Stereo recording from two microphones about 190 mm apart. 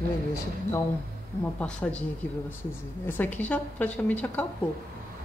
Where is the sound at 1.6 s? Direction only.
5° left (ahead or behind).